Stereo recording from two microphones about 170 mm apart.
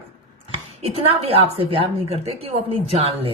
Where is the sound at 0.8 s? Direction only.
35° right (ahead or behind).